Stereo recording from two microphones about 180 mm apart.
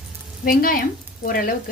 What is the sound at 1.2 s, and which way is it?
Speech, 50° left (ahead or behind).